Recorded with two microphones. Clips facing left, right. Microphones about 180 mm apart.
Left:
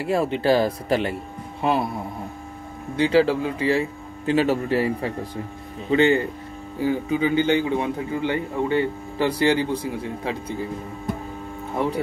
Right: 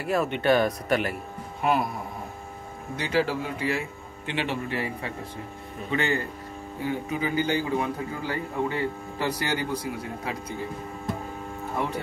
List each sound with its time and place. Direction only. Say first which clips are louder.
0.0 s a man's voice: left 3 dB; 30° left (ahead or behind)
3.0 s a man's voice: left 8 dB; 30° left (ahead or behind)